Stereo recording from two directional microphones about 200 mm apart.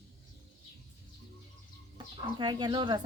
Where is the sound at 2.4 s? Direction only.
20° right (ahead or behind).